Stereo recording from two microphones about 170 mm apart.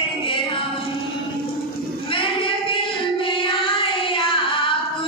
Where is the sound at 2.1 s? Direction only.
30° left (ahead or behind).